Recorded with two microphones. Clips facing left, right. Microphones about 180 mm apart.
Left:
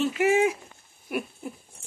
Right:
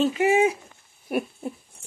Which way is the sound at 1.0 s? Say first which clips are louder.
Right 4 dB; 35° right (ahead or behind).